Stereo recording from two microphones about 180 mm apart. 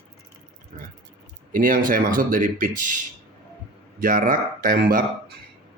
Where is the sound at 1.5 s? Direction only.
50° right (ahead or behind).